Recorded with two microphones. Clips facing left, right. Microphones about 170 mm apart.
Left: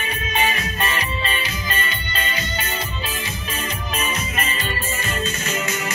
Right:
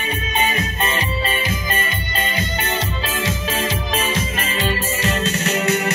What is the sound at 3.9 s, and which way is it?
Music, 90° right.